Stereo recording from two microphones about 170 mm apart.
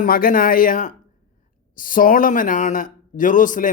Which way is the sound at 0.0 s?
55° left (ahead or behind).